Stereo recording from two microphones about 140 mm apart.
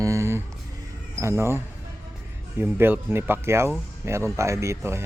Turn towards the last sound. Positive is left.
turn(degrees=-20)  # may be behind; listen again after turning